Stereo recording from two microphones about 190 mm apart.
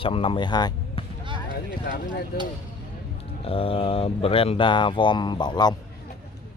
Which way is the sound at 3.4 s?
30° left (ahead or behind).